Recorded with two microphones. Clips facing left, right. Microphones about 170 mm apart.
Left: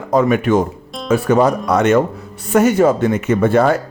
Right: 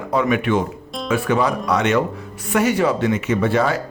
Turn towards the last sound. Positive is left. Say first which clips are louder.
# left 5 dB
turn(degrees=50)  # may be behind; listen again after turning